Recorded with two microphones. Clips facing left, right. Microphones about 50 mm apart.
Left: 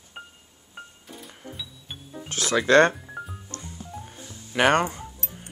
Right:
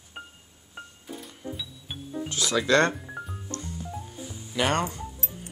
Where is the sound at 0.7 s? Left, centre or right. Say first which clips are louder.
Right 2 dB; centre.